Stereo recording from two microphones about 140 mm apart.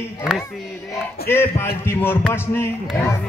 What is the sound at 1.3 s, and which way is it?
Music, 15° left (ahead or behind).